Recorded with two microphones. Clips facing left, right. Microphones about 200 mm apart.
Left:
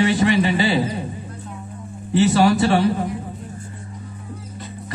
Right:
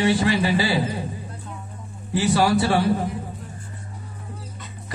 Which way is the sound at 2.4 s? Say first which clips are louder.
Left 1 dB; 25° left (ahead or behind).